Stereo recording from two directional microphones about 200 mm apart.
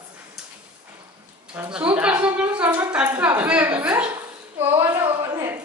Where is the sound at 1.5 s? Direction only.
10° right (ahead or behind).